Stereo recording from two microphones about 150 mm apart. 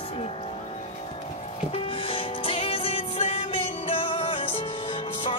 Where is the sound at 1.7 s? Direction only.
35° left (ahead or behind).